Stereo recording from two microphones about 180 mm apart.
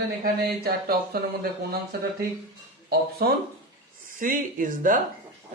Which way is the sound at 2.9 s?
60° right (ahead or behind).